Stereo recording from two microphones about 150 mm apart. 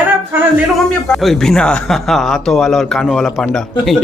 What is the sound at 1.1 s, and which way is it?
Speech, centre (ahead or behind).